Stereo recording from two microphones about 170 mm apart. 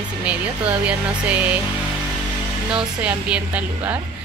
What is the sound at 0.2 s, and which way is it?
A woman's voice, 5° right (ahead or behind).